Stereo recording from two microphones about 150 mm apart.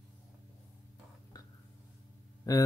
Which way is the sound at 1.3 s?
25° left (ahead or behind).